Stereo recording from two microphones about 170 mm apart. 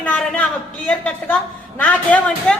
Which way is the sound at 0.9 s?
10° left (ahead or behind).